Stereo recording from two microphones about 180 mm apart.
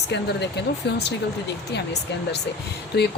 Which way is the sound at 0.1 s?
70° left (ahead or behind).